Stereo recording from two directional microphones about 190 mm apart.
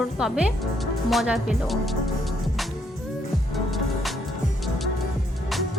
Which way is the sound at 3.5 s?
Centre (ahead or behind).